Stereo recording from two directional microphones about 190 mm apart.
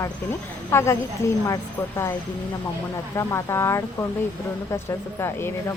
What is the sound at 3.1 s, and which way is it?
Speech, 15° left (ahead or behind).